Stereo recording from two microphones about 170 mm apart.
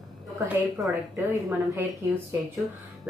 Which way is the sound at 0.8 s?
20° right (ahead or behind).